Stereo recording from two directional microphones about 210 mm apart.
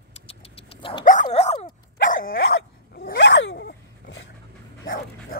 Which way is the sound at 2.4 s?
60° left (ahead or behind).